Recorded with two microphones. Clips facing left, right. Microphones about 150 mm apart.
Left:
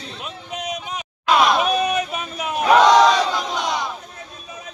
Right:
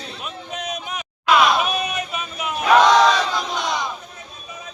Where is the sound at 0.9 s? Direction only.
35° left (ahead or behind).